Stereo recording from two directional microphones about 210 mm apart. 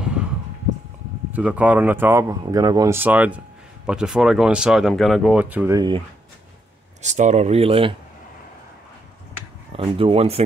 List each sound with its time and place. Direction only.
0.0 s a sound: 5° right (ahead or behind)
1.3 s speech: 5° right (ahead or behind)
5.8 s speech: 25° right (ahead or behind)
7.0 s speech: 35° right (ahead or behind)
9.7 s speech: 25° right (ahead or behind)